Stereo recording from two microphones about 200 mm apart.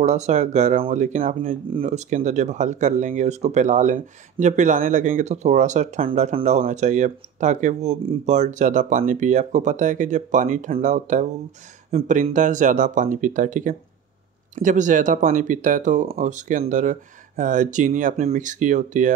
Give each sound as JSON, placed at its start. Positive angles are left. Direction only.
{"t": 0.0, "sound": "speech", "side_deg": -35}